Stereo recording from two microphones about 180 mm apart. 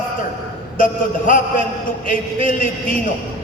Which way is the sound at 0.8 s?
50° left (ahead or behind).